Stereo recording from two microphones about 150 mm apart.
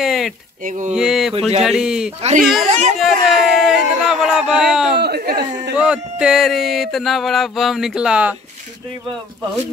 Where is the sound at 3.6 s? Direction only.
Centre (ahead or behind).